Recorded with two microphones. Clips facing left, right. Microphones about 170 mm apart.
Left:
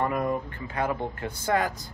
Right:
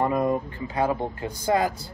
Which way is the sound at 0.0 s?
25° right (ahead or behind).